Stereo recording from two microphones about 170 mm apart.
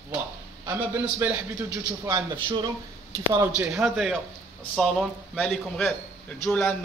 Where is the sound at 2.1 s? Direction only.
25° right (ahead or behind).